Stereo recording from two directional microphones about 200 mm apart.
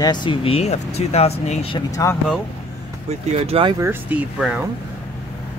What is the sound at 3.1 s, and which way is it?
Speech, 30° right (ahead or behind).